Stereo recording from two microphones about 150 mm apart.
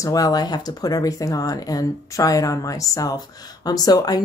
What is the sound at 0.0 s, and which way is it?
Speech, 25° left (ahead or behind).